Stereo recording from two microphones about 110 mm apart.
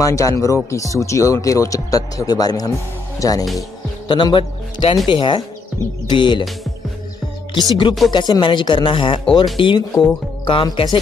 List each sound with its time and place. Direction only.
0.0 s speech: 30° left (ahead or behind)
4.1 s speech: 45° left (ahead or behind)
7.5 s speech: 45° left (ahead or behind)